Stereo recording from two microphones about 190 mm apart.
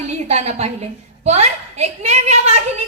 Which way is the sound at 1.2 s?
35° right (ahead or behind).